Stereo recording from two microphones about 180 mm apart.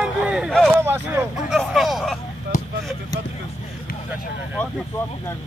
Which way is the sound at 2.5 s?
45° left (ahead or behind).